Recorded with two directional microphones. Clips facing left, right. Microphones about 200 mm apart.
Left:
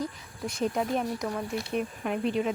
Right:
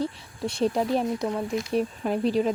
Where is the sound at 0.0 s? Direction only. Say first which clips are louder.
Right 5 dB; 30° right (ahead or behind).